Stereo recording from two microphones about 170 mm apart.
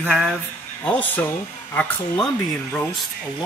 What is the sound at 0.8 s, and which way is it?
Speech, 5° left (ahead or behind).